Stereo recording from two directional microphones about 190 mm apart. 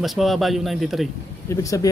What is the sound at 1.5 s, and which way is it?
Speech, 15° left (ahead or behind).